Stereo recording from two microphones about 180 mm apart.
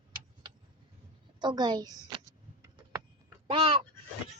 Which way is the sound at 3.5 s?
30° right (ahead or behind).